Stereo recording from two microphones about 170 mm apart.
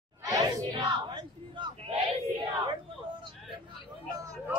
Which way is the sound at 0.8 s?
30° right (ahead or behind).